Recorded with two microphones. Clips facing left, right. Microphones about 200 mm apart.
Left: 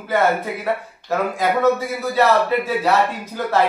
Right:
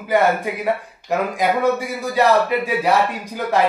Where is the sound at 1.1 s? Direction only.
15° right (ahead or behind).